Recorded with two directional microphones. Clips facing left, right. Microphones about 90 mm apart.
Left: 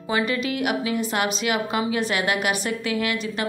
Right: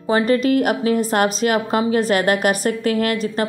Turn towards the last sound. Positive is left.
turn(degrees=-40)  # may be behind; listen again after turning